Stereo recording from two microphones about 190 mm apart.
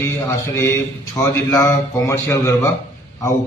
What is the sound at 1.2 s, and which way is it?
A man's voice, 15° left (ahead or behind).